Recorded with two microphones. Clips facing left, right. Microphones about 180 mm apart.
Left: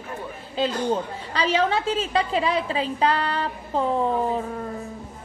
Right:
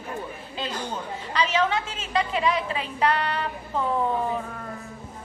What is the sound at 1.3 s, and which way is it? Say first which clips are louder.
A woman's voice: left 2 dB; 35° left (ahead or behind).